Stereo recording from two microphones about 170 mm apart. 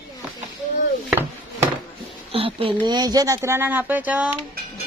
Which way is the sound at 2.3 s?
35° right (ahead or behind).